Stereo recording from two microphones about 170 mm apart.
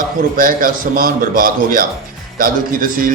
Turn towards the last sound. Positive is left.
turn(degrees=-55)  # may be behind; listen again after turning